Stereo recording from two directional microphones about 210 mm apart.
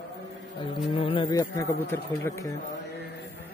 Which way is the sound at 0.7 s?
25° left (ahead or behind).